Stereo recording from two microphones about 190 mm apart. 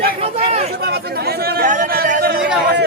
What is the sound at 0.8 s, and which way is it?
Speech, 55° right (ahead or behind).